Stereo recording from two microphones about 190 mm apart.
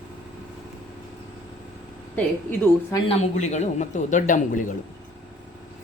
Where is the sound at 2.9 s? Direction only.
30° left (ahead or behind).